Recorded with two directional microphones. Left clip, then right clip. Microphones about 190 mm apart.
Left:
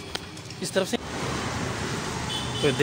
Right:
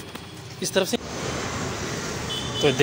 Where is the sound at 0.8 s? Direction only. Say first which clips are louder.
Right 3 dB; 15° right (ahead or behind).